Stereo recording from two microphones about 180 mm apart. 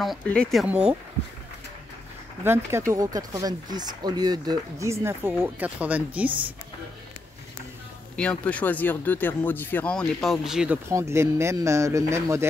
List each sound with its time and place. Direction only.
0.0 s speech: 5° left (ahead or behind)
2.4 s speech: 15° right (ahead or behind)
8.2 s speech: 5° left (ahead or behind)
10.9 s speech: 15° right (ahead or behind)